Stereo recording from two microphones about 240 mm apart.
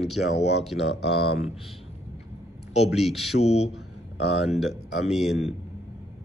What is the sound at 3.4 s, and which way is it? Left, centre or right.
Speech, left.